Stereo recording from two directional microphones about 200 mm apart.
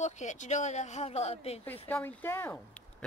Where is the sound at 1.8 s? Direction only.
10° left (ahead or behind).